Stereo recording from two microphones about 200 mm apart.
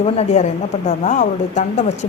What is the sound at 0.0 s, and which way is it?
Speech, 35° left (ahead or behind).